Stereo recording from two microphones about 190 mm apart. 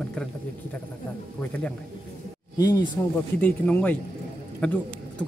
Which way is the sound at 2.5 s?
20° left (ahead or behind).